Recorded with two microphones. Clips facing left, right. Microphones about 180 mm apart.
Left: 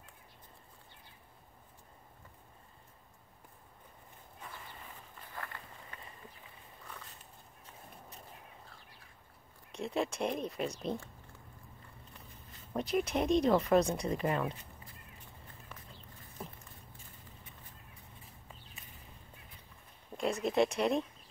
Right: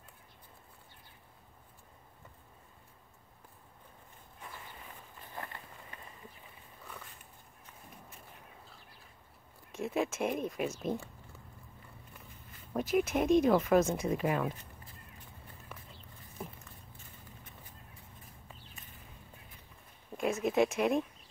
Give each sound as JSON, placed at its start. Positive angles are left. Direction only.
{"t": 5.3, "sound": "run", "side_deg": -20}
{"t": 9.7, "sound": "speech", "side_deg": -5}
{"t": 12.7, "sound": "speech", "side_deg": -5}
{"t": 20.2, "sound": "speech", "side_deg": 0}